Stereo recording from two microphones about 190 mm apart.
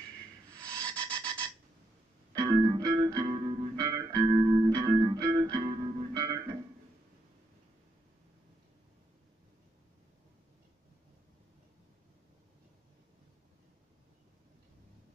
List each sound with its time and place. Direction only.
0.7 s rub: 20° right (ahead or behind)
2.3 s music: 20° right (ahead or behind)